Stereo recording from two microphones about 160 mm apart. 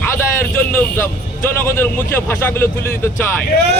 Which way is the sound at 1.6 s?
15° left (ahead or behind).